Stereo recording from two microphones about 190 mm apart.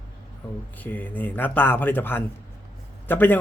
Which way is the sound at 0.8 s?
10° left (ahead or behind).